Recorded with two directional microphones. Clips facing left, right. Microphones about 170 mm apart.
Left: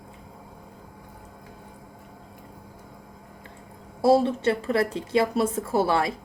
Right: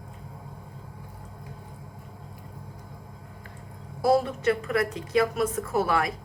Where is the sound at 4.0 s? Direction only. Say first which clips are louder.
Left 3 dB; 30° left (ahead or behind).